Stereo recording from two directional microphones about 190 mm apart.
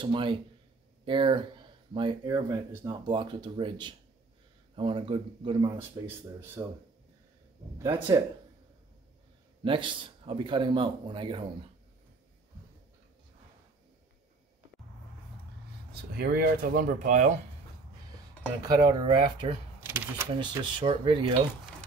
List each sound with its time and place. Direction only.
0.0 s speech: 25° right (ahead or behind)
6.0 s speech: 10° right (ahead or behind)
7.8 s speech: 20° right (ahead or behind)
9.7 s speech: 25° right (ahead or behind)
15.9 s speech: 55° right (ahead or behind); by 17.4 s 40° right (ahead or behind)
18.6 s speech: 20° right (ahead or behind)
19.8 s keys jangling: 10° right (ahead or behind)
20.3 s speech: 30° right (ahead or behind)